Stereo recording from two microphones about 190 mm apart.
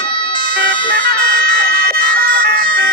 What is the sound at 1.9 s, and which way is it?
Siren, 50° right (ahead or behind).